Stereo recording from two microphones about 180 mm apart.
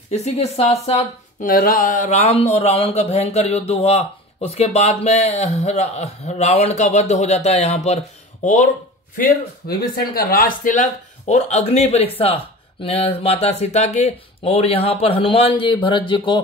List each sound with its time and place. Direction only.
0.1 s speech: 35° left (ahead or behind)
1.4 s speech: 50° left (ahead or behind); by 16.3 s 25° left (ahead or behind)